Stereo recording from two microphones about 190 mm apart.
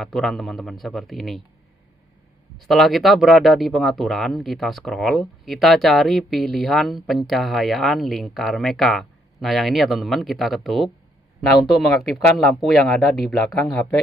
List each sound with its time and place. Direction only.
0.0 s speech: centre (ahead or behind)
2.5 s speech: centre (ahead or behind)